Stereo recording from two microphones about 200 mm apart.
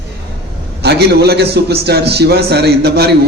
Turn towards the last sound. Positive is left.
turn(degrees=-55)  # may be behind; listen again after turning